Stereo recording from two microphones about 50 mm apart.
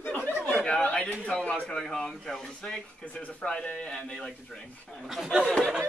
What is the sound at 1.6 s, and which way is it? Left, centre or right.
Speech, centre.